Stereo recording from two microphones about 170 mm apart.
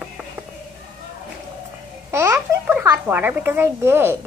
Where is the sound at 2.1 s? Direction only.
15° right (ahead or behind).